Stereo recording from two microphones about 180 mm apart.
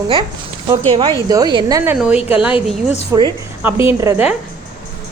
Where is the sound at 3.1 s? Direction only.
15° right (ahead or behind).